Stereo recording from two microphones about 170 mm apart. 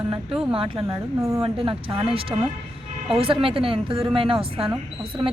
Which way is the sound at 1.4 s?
35° right (ahead or behind).